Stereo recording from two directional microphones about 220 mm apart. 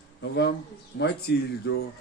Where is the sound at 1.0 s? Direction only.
50° left (ahead or behind).